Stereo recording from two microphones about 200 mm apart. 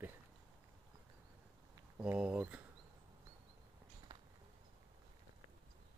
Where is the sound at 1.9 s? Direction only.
5° right (ahead or behind).